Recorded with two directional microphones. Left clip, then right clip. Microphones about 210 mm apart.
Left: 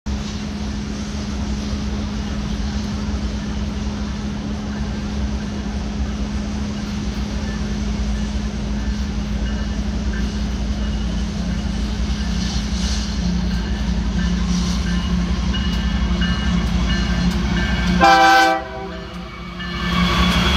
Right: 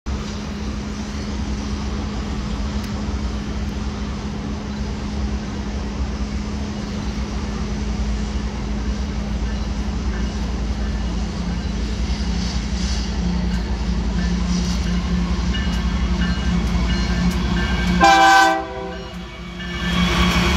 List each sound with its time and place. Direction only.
14.5 s train: 30° left (ahead or behind)
17.9 s train: 10° right (ahead or behind)
19.9 s train: centre (ahead or behind)